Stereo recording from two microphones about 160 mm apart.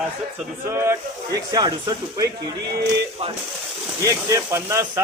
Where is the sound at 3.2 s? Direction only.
35° right (ahead or behind).